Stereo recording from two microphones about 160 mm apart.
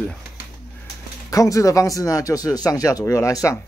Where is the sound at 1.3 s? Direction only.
20° left (ahead or behind).